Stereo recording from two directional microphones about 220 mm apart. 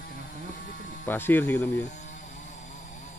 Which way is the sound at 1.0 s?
10° left (ahead or behind).